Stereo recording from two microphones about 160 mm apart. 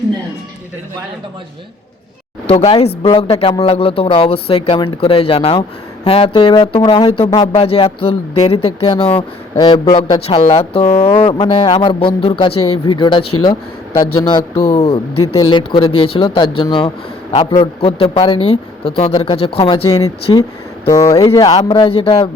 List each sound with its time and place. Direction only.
2.6 s speech: 40° left (ahead or behind)
7.3 s speech: 20° left (ahead or behind)
7.5 s speech: 35° left (ahead or behind)
9.6 s speech: 25° left (ahead or behind)
10.2 s speech: 40° left (ahead or behind)